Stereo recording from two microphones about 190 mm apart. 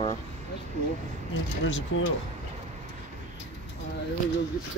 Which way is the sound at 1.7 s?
80° left.